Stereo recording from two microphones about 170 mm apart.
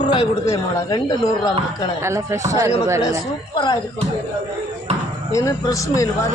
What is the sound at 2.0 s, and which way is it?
Speech, 15° right (ahead or behind).